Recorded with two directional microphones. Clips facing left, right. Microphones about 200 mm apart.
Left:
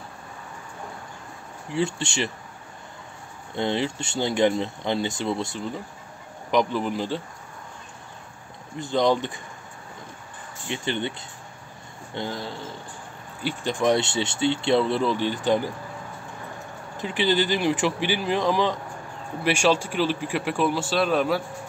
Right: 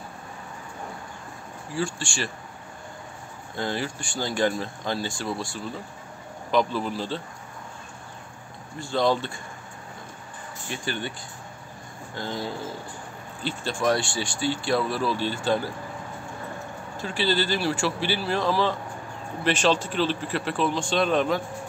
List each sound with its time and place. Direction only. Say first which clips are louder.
1.7 s speech: left 4 dB; 20° left (ahead or behind)
3.5 s speech: left 4 dB; 20° left (ahead or behind)
8.7 s speech: left 2 dB; 20° left (ahead or behind)
10.7 s speech: left 4 dB; 20° left (ahead or behind)
12.2 s speech: left 3 dB; 25° left (ahead or behind)
13.4 s speech: left 3 dB; 15° left (ahead or behind)
16.9 s speech: left 2 dB; 20° left (ahead or behind)